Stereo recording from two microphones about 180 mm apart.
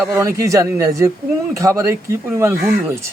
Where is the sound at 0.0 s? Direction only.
15° right (ahead or behind).